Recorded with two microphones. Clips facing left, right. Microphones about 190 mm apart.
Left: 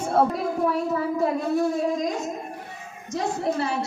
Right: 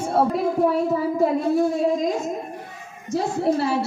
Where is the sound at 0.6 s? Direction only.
25° right (ahead or behind).